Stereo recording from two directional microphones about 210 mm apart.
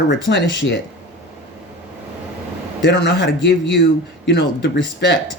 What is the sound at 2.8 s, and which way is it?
Speech, 55° left (ahead or behind).